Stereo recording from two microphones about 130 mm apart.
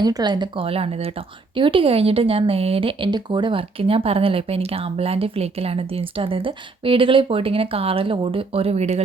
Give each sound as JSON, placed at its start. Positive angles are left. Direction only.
{"t": 0.0, "sound": "speech", "side_deg": -30}